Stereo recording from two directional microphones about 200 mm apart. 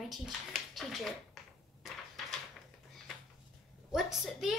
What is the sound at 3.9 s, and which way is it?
Speech, centre (ahead or behind).